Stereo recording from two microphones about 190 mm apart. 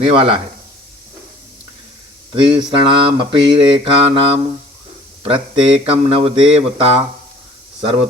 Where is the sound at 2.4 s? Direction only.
25° right (ahead or behind).